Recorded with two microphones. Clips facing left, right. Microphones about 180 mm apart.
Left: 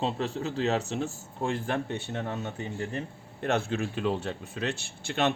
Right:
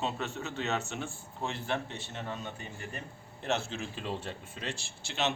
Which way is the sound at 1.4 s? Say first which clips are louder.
Left 5 dB; 50° left (ahead or behind).